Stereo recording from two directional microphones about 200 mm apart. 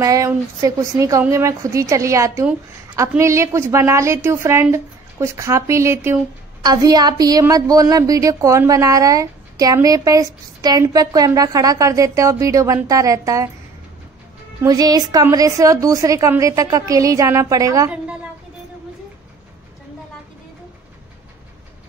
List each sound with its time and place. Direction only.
0.0 s a woman's voice: 15° right (ahead or behind)
14.6 s a woman's voice: 20° right (ahead or behind)